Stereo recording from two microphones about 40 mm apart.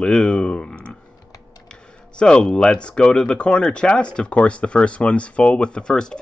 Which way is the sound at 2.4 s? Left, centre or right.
Centre.